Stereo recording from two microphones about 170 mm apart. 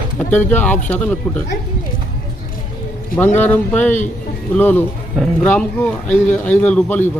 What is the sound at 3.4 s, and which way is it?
Speech, 10° left (ahead or behind).